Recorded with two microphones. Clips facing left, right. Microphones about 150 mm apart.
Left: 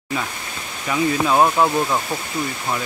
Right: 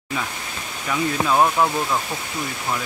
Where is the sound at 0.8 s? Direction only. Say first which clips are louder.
Left 3 dB; 5° left (ahead or behind).